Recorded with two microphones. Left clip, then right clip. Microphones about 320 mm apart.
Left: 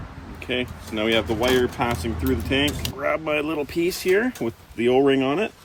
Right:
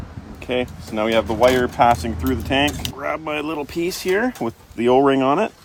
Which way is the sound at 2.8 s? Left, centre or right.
Centre.